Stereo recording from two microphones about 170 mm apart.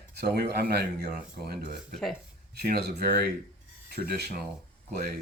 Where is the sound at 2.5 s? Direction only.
70° right (ahead or behind).